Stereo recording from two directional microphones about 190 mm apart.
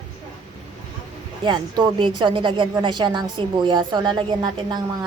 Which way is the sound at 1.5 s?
25° right (ahead or behind).